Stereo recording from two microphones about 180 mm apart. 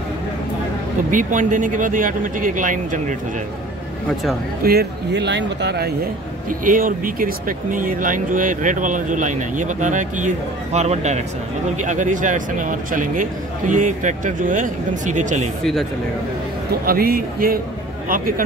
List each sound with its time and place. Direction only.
1.1 s speech: 45° right (ahead or behind)
4.6 s speech: 65° right (ahead or behind)
6.6 s speech: 50° right (ahead or behind)
16.8 s speech: 55° right (ahead or behind)